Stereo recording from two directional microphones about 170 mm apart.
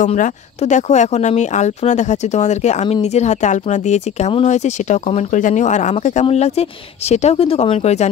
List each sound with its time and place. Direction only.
0.0 s speech: 50° left (ahead or behind)